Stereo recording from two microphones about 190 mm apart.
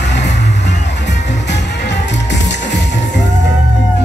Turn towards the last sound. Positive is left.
turn(degrees=65)  # may be behind; listen again after turning